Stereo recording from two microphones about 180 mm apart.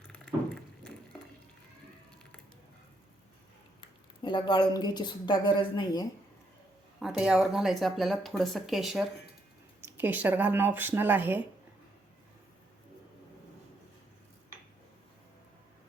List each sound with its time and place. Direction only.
3.8 s speech: 25° left (ahead or behind)
7.0 s speech: 5° right (ahead or behind)